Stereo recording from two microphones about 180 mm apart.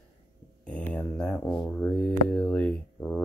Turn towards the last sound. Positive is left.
turn(degrees=5)  # may be behind; listen again after turning